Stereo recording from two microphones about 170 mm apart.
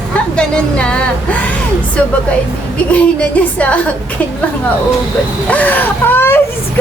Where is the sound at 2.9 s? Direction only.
10° left (ahead or behind).